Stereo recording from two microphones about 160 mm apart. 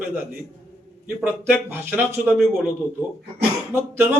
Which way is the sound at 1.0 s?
10° right (ahead or behind).